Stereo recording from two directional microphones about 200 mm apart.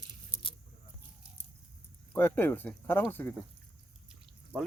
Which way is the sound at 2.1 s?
10° left (ahead or behind).